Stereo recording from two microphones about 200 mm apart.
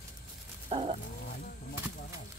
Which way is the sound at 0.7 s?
30° right (ahead or behind).